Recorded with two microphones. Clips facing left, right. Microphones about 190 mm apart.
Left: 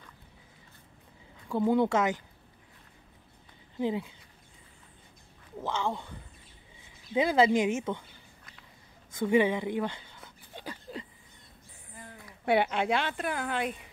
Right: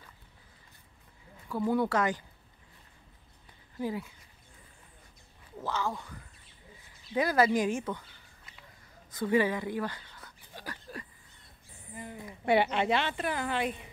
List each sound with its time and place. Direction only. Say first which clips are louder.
1.5 s speech: left 3 dB; 20° left (ahead or behind)
3.7 s speech: left 4 dB; 20° left (ahead or behind)
5.6 s speech: left 2 dB; 25° left (ahead or behind)
7.2 s speech: left 2 dB; 25° left (ahead or behind)
9.2 s a sound: left 2 dB; 20° left (ahead or behind)
11.9 s a sound: right 6 dB; 10° right (ahead or behind)
12.4 s a woman's voice: even; centre (ahead or behind)